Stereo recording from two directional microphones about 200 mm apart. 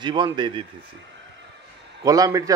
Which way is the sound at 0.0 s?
25° right (ahead or behind).